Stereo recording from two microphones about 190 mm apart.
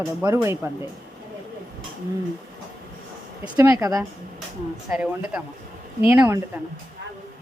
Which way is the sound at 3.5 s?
15° right (ahead or behind).